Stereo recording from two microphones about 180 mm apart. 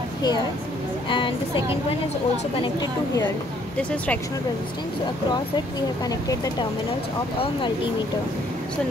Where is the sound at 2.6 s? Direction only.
25° left (ahead or behind).